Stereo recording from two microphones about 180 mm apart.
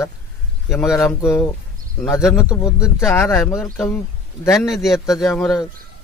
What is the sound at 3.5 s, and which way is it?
A man's voice, centre (ahead or behind).